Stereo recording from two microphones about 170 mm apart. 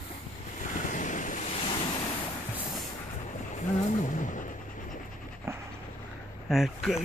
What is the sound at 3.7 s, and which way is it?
Music, 45° left (ahead or behind).